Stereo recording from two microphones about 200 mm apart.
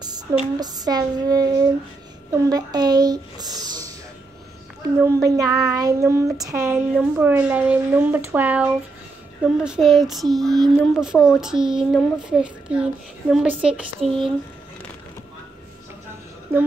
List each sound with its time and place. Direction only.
0.0 s speech: 20° right (ahead or behind)
5.0 s child singing: 15° right (ahead or behind); by 14.3 s centre (ahead or behind)